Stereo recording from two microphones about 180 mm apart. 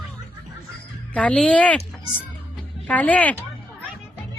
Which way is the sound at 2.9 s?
10° left (ahead or behind).